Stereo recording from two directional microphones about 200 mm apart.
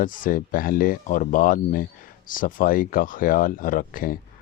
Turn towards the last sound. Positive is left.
turn(degrees=45)  # may be behind; listen again after turning